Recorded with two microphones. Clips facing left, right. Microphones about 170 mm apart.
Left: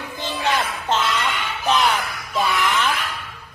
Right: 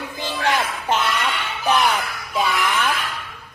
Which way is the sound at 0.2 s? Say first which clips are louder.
Right 1 dB; 15° right (ahead or behind).